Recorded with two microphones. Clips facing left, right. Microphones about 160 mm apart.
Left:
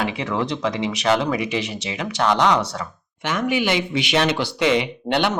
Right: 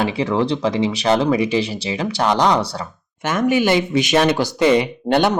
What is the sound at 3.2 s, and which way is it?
Speech, 45° right (ahead or behind).